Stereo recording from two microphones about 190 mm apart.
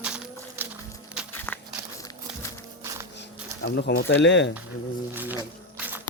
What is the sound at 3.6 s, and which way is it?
Speech, 55° left (ahead or behind).